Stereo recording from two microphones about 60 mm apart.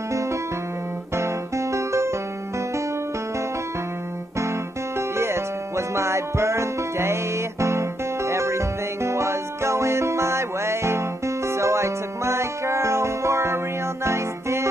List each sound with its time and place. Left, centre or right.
1.1 s music: right
4.9 s music: right